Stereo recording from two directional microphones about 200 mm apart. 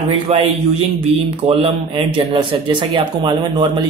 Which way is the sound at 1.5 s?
25° right (ahead or behind).